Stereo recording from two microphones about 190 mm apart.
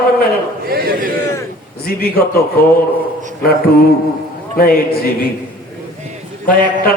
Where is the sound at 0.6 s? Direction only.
50° right (ahead or behind).